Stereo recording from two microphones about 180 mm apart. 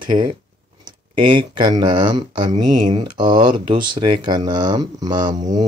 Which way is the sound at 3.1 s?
25° right (ahead or behind).